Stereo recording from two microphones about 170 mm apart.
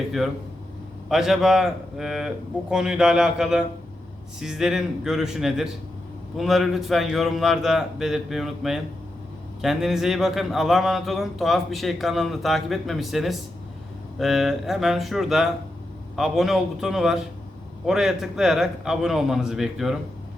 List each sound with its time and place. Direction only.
1.0 s speech: centre (ahead or behind)